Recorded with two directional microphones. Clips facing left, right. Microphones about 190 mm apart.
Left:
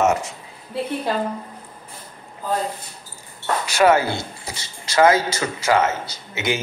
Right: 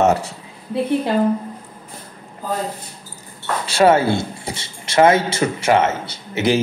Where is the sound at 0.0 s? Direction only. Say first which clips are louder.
Right 3 dB; 35° right (ahead or behind).